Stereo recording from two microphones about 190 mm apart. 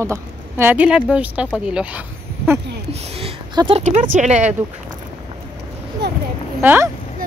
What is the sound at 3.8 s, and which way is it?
Speech, 40° right (ahead or behind).